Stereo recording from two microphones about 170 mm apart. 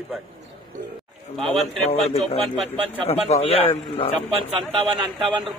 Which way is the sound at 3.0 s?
35° left (ahead or behind).